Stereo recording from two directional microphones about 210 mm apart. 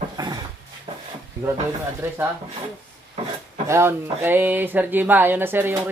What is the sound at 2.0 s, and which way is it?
Speech, 10° right (ahead or behind).